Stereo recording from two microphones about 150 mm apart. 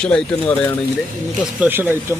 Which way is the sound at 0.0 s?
5° left (ahead or behind).